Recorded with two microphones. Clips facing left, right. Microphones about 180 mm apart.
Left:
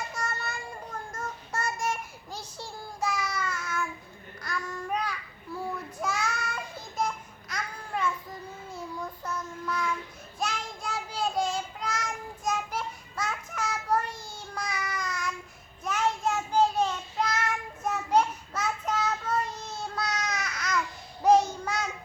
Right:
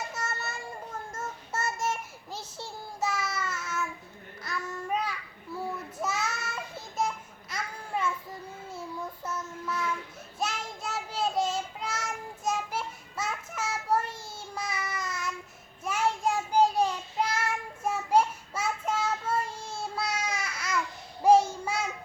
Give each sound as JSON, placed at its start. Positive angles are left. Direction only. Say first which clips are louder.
{"t": 0.1, "sound": "child singing", "louder": "left 1 dB", "side_deg": -5}
{"t": 7.5, "sound": "babbling", "louder": "even", "side_deg": -5}
{"t": 8.7, "sound": "child singing", "louder": "even", "side_deg": -5}
{"t": 19.5, "sound": "child singing", "louder": "even", "side_deg": -30}
{"t": 19.8, "sound": "babbling", "louder": "even", "side_deg": -10}
{"t": 21.6, "sound": "child singing", "louder": "even", "side_deg": -5}